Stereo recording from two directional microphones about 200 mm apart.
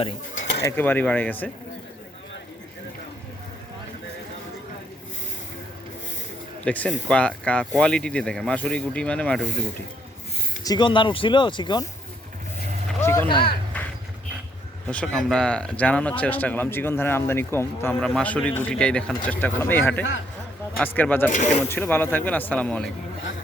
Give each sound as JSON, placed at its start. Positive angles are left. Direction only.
{"t": 0.6, "sound": "speech", "side_deg": 10}
{"t": 6.7, "sound": "speech", "side_deg": 5}
{"t": 10.6, "sound": "speech", "side_deg": 20}
{"t": 13.0, "sound": "a sound", "side_deg": 15}
{"t": 13.2, "sound": "speech", "side_deg": 25}
{"t": 13.7, "sound": "a sound", "side_deg": 5}
{"t": 14.8, "sound": "speech", "side_deg": 5}
{"t": 21.3, "sound": "speech", "side_deg": 35}
{"t": 21.7, "sound": "speech", "side_deg": 10}